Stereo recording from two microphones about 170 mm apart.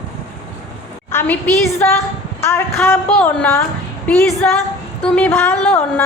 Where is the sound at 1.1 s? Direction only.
10° left (ahead or behind).